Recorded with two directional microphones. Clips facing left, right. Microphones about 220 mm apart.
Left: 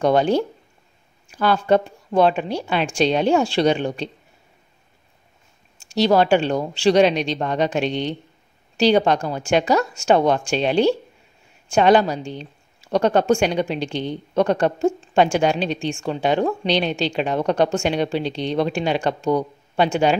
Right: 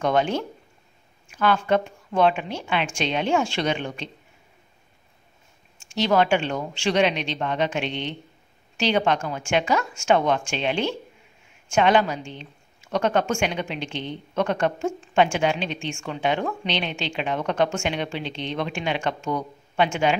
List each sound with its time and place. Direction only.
0.0 s a woman's voice: 35° left (ahead or behind)
5.8 s a woman's voice: 35° left (ahead or behind)